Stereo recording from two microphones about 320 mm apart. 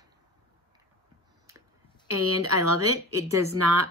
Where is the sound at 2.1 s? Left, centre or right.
Right.